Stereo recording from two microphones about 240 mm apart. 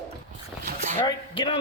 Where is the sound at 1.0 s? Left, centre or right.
Left.